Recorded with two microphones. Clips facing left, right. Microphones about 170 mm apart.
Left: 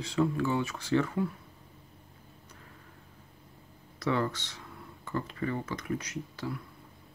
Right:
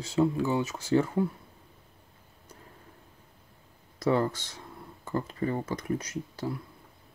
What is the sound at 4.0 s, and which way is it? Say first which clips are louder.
Speech: right 4 dB; 40° right (ahead or behind).